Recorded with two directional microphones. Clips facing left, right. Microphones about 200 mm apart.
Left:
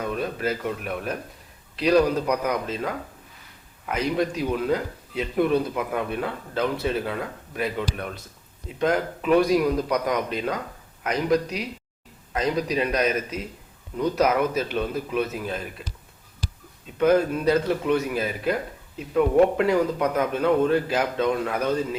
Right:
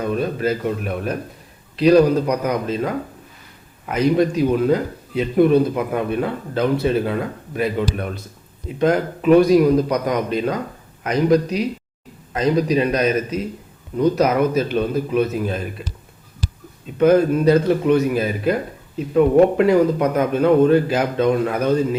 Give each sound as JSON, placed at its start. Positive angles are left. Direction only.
{"t": 0.0, "sound": "a man's voice", "side_deg": -35}
{"t": 17.0, "sound": "speech", "side_deg": -45}